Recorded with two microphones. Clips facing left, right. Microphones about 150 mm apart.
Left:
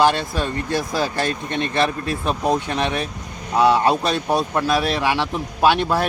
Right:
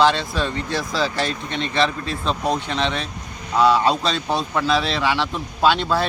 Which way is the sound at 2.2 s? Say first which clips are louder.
Left 2 dB; 15° left (ahead or behind).